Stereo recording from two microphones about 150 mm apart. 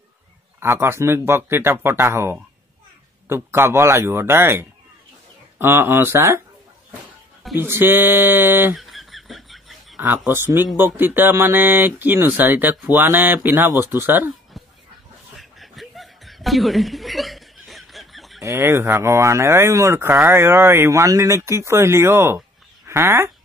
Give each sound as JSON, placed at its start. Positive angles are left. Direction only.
{"t": 0.6, "sound": "speech", "side_deg": -15}
{"t": 7.5, "sound": "speech", "side_deg": -15}
{"t": 8.7, "sound": "a sound", "side_deg": 0}
{"t": 9.9, "sound": "speech", "side_deg": -15}
{"t": 15.3, "sound": "chuckle", "side_deg": 0}
{"t": 18.4, "sound": "speech", "side_deg": -20}